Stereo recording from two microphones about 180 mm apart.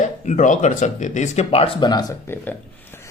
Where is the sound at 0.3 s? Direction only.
45° left (ahead or behind); by 2.1 s 20° left (ahead or behind).